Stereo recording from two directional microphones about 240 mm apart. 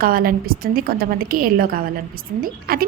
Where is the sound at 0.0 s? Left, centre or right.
Right.